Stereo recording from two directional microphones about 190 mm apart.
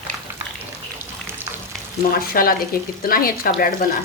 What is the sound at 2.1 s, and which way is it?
Speech, 50° left (ahead or behind).